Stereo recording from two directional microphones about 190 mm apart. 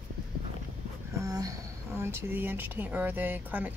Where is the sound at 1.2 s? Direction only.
20° right (ahead or behind).